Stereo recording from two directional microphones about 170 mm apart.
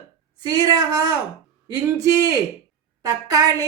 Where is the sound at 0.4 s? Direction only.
20° right (ahead or behind).